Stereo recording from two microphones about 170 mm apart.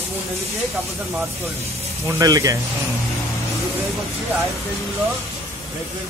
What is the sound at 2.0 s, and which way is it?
Speech, 20° right (ahead or behind).